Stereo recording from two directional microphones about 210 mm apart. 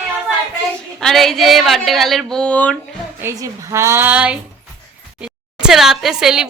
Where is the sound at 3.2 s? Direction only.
15° right (ahead or behind).